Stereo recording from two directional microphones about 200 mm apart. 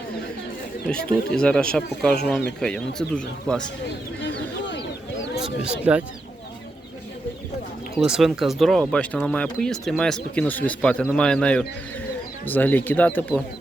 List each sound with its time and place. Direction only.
0.9 s speech: 5° left (ahead or behind)
4.2 s a sound: 60° left (ahead or behind)
5.9 s speech: 5° right (ahead or behind)
8.0 s speech: 5° right (ahead or behind)